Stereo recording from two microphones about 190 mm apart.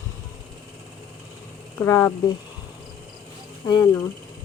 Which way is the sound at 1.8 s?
15° left (ahead or behind).